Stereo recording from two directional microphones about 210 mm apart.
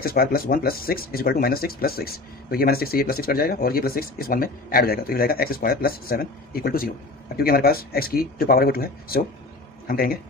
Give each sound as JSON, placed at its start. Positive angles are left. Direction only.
{"t": 0.0, "sound": "a man's voice", "side_deg": 45}